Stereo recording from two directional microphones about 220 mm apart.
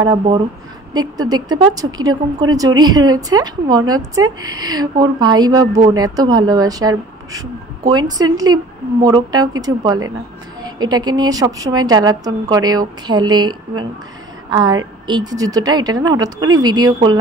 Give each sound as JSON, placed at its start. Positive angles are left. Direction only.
{"t": 0.0, "sound": "speech", "side_deg": -15}